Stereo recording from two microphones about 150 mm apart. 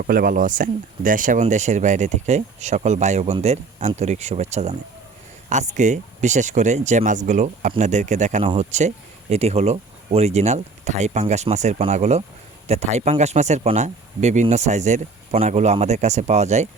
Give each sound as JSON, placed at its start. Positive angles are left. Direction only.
{"t": 0.0, "sound": "speech", "side_deg": -75}